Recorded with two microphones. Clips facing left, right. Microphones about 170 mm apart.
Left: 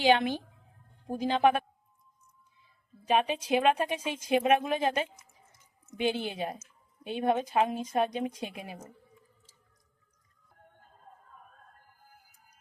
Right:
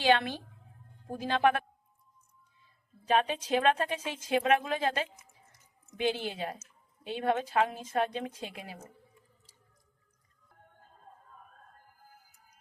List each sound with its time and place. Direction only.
0.0 s a woman's voice: 15° left (ahead or behind)
3.1 s a woman's voice: 10° left (ahead or behind)